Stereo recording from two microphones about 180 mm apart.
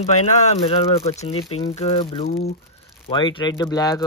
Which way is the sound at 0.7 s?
35° left (ahead or behind).